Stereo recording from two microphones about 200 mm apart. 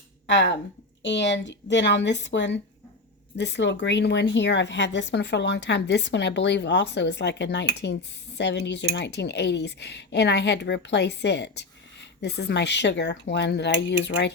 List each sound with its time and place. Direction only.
0.3 s a woman's voice: 60° left (ahead or behind)